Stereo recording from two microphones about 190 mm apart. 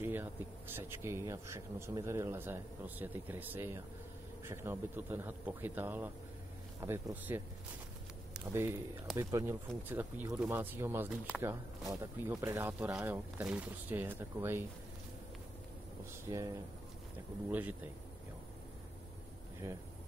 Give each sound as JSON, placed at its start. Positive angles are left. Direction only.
{"t": 0.0, "sound": "speech", "side_deg": -10}
{"t": 8.3, "sound": "a sound", "side_deg": -10}
{"t": 9.1, "sound": "speech", "side_deg": -15}
{"t": 11.9, "sound": "speech", "side_deg": -15}
{"t": 16.3, "sound": "speech", "side_deg": -15}
{"t": 19.6, "sound": "speech", "side_deg": -15}